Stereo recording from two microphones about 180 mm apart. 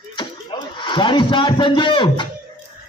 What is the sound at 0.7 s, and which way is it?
A man's voice, 25° left (ahead or behind).